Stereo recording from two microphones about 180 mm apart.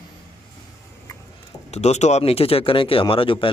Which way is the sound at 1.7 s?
40° left (ahead or behind).